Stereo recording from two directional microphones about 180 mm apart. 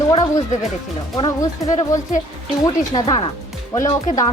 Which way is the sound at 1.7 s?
35° left (ahead or behind).